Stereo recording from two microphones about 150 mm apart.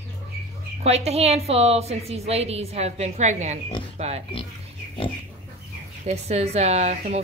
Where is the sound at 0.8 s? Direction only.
45° right (ahead or behind).